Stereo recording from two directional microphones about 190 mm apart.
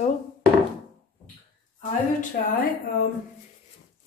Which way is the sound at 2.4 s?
50° left (ahead or behind).